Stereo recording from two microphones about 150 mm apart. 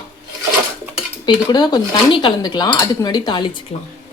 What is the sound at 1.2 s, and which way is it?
Speech, 30° left (ahead or behind).